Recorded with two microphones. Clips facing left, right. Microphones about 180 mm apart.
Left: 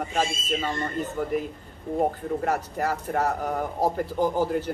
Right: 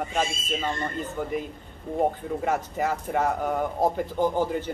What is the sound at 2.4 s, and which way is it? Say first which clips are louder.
Speech: right 1 dB; centre (ahead or behind).